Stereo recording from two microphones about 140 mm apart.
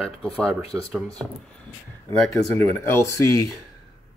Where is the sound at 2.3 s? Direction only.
15° left (ahead or behind).